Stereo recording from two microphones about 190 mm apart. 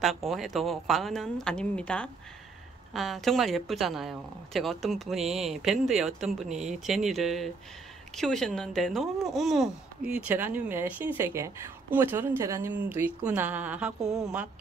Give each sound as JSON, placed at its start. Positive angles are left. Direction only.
{"t": 0.0, "sound": "speech", "side_deg": 0}